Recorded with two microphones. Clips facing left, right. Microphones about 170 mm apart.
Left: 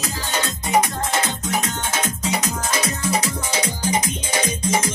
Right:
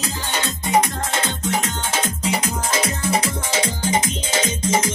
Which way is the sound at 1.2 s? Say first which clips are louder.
Right 1 dB; 30° right (ahead or behind).